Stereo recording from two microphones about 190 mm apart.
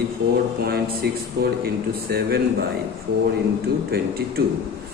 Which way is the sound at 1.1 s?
55° right (ahead or behind).